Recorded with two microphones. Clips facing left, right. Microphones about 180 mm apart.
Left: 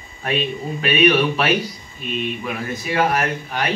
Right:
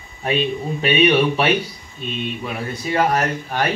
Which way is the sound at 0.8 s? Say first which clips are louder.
Right 1 dB; 25° right (ahead or behind).